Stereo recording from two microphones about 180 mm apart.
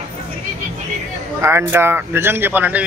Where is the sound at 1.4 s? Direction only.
15° right (ahead or behind).